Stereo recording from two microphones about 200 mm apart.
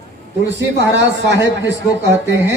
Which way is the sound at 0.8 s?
60° right (ahead or behind).